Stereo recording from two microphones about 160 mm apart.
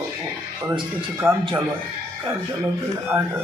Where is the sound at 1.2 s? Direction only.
15° right (ahead or behind).